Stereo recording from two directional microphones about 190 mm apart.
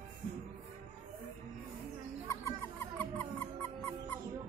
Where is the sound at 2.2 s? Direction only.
15° left (ahead or behind).